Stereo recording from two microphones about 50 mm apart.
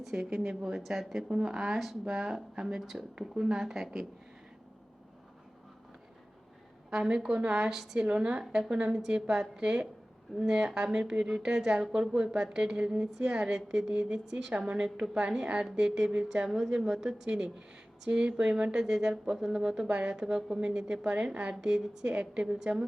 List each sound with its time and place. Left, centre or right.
0.1 s speech: centre
1.3 s speech: centre
6.9 s speech: centre
7.7 s speech: centre
7.9 s a woman's voice: right
16.5 s speech: centre
21.0 s a woman's voice: right